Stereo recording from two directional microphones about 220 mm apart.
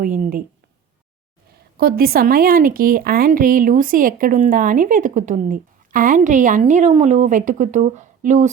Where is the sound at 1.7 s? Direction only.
45° right (ahead or behind).